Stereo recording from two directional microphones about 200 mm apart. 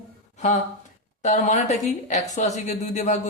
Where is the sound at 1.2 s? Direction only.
35° left (ahead or behind).